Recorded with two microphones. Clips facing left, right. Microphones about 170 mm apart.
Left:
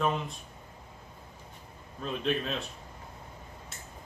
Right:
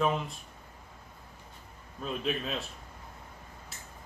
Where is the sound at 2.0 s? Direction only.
5° right (ahead or behind).